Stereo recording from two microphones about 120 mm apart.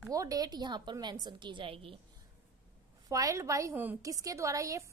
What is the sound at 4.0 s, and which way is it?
Speech, 30° right (ahead or behind).